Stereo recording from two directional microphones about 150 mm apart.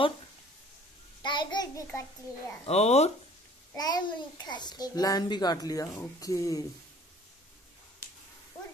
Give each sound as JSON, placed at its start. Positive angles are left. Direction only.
{"t": 1.2, "sound": "a sound", "side_deg": 30}
{"t": 2.6, "sound": "speech", "side_deg": 45}
{"t": 3.7, "sound": "a child's voice", "side_deg": 25}